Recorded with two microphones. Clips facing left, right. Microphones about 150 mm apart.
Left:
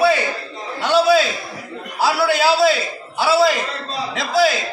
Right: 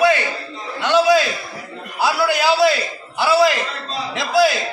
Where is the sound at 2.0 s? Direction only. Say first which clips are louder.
Left 1 dB; centre (ahead or behind).